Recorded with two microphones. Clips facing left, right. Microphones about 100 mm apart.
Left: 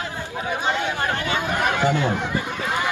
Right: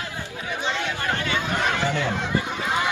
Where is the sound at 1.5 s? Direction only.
15° left (ahead or behind).